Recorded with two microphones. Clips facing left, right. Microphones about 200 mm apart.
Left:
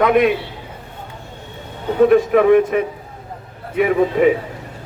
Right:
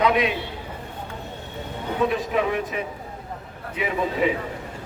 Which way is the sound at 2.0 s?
55° left (ahead or behind).